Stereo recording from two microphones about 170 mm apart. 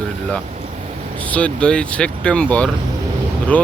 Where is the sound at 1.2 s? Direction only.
10° left (ahead or behind).